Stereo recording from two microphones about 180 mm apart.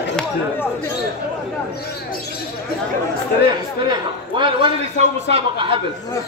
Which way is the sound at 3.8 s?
25° right (ahead or behind).